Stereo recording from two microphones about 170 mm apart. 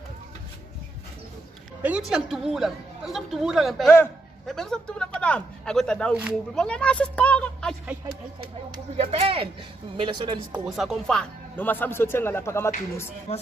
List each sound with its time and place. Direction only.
1.8 s a woman's voice: 5° right (ahead or behind)
8.4 s speech: 30° right (ahead or behind)
10.5 s speech: 5° right (ahead or behind); by 13.1 s 15° left (ahead or behind)